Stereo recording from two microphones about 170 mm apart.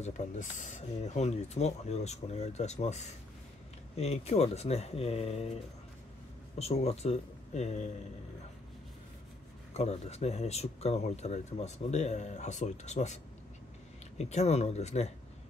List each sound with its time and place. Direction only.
0.0 s speech: 45° left (ahead or behind)
6.6 s speech: 35° left (ahead or behind)
9.8 s speech: 40° left (ahead or behind)